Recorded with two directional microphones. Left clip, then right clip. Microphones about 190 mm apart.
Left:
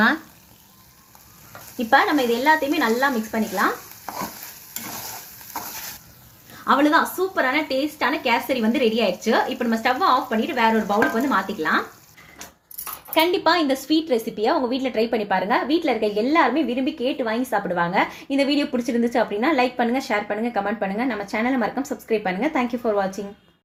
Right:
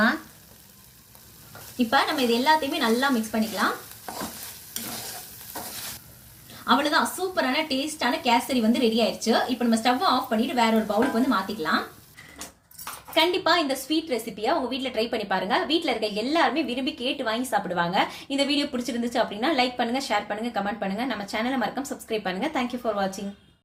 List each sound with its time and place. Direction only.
1.9 s speech: 35° left (ahead or behind)
6.7 s a woman's voice: 40° left (ahead or behind)
13.1 s a woman's voice: 30° left (ahead or behind)